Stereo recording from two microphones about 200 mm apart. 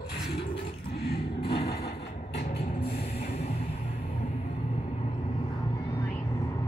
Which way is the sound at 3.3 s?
30° left (ahead or behind).